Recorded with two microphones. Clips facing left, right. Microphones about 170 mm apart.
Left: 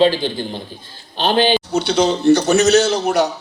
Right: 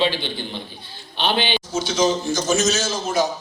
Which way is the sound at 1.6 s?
65° left (ahead or behind).